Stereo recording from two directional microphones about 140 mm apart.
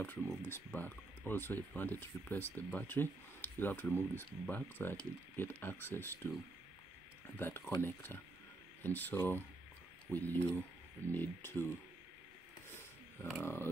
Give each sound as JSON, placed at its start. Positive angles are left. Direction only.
{"t": 0.0, "sound": "speech", "side_deg": 15}
{"t": 7.3, "sound": "speech", "side_deg": 15}
{"t": 13.4, "sound": "speech", "side_deg": 15}